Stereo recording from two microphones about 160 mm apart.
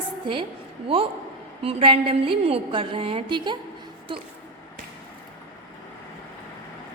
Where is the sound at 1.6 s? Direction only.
35° right (ahead or behind).